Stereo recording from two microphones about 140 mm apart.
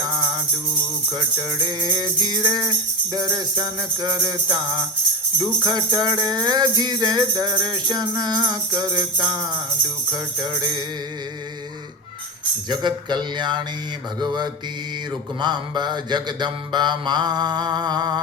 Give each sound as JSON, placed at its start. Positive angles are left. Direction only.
{"t": 1.1, "sound": "music", "side_deg": -30}
{"t": 10.1, "sound": "mantra", "side_deg": -30}
{"t": 12.6, "sound": "mantra", "side_deg": -30}